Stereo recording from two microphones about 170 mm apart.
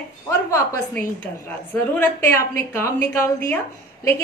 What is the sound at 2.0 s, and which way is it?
A woman's voice, 15° left (ahead or behind).